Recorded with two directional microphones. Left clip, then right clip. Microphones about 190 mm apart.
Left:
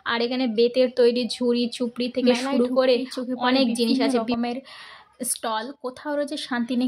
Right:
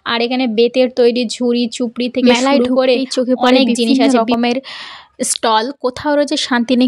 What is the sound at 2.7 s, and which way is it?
Speech, 25° right (ahead or behind).